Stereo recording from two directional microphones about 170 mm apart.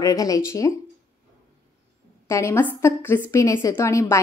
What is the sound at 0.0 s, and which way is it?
Speech, 20° left (ahead or behind).